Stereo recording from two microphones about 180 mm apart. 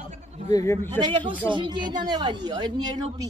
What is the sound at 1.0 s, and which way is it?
Speech, 25° right (ahead or behind).